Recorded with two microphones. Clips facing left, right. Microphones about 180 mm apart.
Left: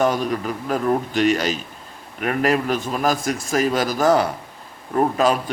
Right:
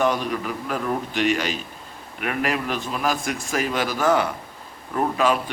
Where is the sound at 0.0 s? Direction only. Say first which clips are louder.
Left 2 dB; 45° left (ahead or behind).